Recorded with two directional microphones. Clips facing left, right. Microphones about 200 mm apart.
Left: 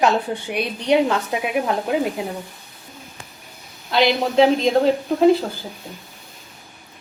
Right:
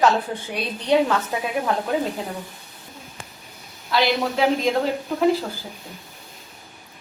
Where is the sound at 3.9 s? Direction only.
20° left (ahead or behind).